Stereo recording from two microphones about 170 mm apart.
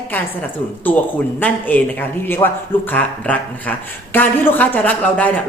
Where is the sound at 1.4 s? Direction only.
10° left (ahead or behind).